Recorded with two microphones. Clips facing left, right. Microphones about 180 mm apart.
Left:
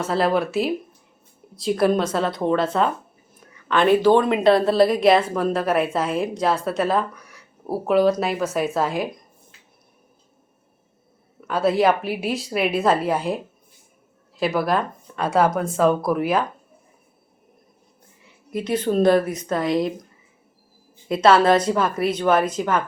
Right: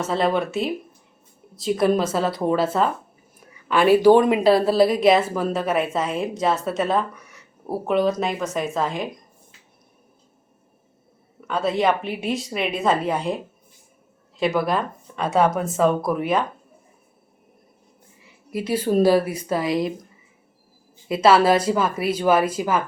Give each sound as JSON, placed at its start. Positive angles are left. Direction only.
{"t": 0.0, "sound": "speech", "side_deg": 0}
{"t": 11.3, "sound": "speech", "side_deg": 5}
{"t": 18.5, "sound": "a woman's voice", "side_deg": -10}
{"t": 21.1, "sound": "speech", "side_deg": -5}